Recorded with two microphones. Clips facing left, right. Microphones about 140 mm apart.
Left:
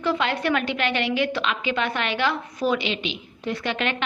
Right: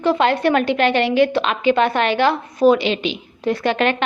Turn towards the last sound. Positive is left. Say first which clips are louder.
# right 8 dB
turn(degrees=-45)  # may be behind; listen again after turning